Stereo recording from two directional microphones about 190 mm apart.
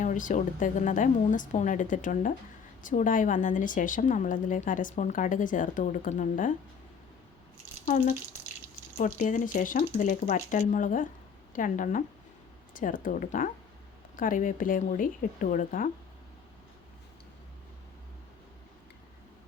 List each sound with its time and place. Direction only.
0.0 s a woman's voice: 45° left (ahead or behind)
7.9 s a woman's voice: 45° left (ahead or behind)